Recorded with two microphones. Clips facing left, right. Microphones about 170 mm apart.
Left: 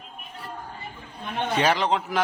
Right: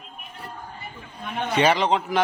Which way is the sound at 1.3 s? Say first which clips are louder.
Right 2 dB; centre (ahead or behind).